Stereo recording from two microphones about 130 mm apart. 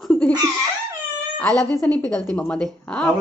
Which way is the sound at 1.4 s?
5° left (ahead or behind).